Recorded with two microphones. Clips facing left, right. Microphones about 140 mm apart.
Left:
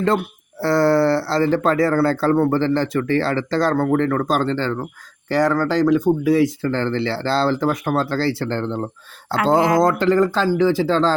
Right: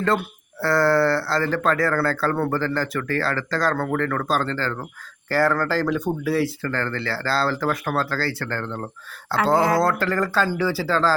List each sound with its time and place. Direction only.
0.6 s speech: 25° left (ahead or behind)
6.6 s speech: 25° left (ahead or behind)
9.6 s speech: centre (ahead or behind)
9.8 s speech: 20° left (ahead or behind)